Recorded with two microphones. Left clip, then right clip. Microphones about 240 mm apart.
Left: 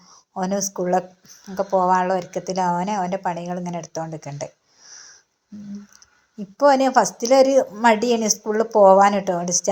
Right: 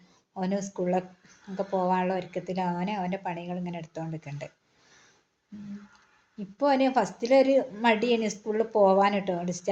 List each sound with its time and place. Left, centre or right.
0.3 s speech: left
6.6 s speech: left